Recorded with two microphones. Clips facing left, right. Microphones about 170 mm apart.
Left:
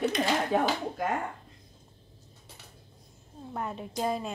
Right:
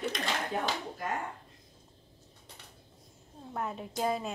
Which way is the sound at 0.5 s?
90° left.